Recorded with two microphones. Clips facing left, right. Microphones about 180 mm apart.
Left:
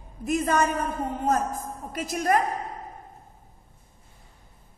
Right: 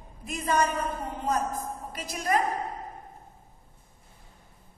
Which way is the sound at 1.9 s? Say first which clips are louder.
Left 4 dB; 45° left (ahead or behind).